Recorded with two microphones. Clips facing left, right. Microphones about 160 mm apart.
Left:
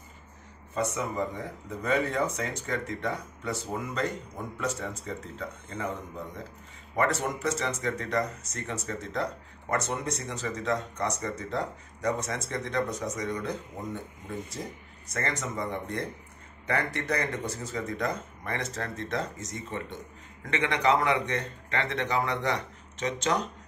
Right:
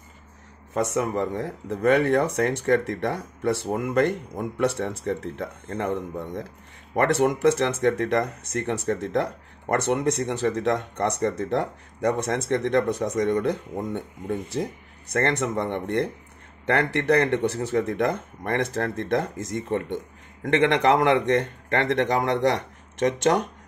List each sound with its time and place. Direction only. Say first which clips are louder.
0.7 s speech: right 6 dB; 70° right (ahead or behind)
15.1 s speech: right 9 dB; 65° right (ahead or behind); by 23.5 s 50° right (ahead or behind)